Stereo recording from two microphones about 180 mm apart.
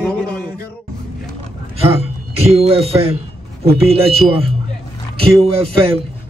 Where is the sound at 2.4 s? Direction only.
35° right (ahead or behind).